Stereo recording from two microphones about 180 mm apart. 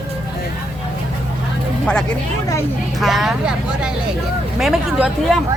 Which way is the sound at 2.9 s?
Centre (ahead or behind).